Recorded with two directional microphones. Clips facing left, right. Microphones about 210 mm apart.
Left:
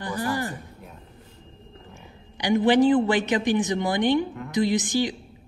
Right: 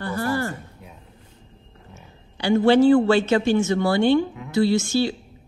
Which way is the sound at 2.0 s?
15° left (ahead or behind).